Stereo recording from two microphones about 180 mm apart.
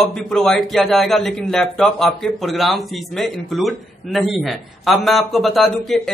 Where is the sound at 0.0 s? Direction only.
5° left (ahead or behind).